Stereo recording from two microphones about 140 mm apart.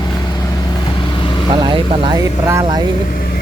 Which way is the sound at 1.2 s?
35° left (ahead or behind).